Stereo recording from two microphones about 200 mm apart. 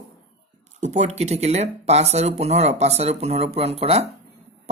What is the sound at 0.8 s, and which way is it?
Speech, 35° right (ahead or behind).